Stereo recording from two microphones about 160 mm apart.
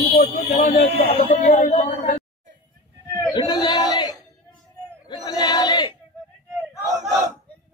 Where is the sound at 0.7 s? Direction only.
50° left (ahead or behind).